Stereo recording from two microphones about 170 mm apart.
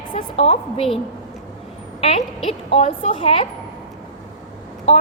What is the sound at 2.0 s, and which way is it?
A woman's voice, 35° left (ahead or behind).